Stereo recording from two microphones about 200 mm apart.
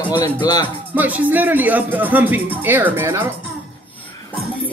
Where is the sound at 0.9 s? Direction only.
10° right (ahead or behind).